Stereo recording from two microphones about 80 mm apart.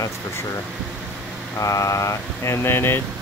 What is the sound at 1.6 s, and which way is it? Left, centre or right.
Speech, left.